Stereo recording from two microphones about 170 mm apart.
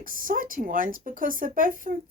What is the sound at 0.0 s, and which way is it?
Speech, 55° right (ahead or behind).